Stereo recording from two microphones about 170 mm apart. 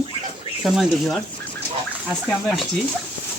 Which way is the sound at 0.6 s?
Centre (ahead or behind).